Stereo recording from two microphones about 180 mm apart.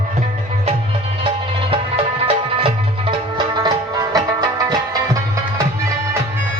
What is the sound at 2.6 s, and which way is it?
Music, 30° right (ahead or behind).